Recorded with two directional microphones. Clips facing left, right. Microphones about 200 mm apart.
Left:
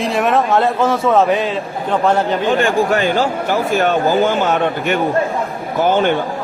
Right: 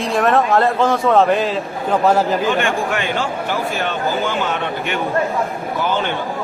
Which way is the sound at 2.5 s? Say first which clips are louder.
Left 4 dB; 35° left (ahead or behind).